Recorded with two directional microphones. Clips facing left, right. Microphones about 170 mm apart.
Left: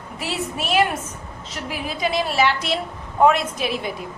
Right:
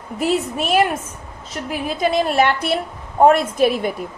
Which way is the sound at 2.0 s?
45° right (ahead or behind).